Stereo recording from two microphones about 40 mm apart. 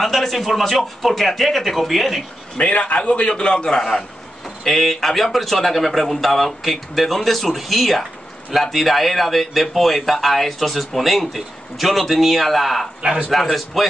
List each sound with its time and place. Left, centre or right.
0.0 s speech: centre
2.5 s a man's voice: left; by 3.8 s centre
4.6 s speech: centre
13.0 s a man's voice: right
13.3 s speech: centre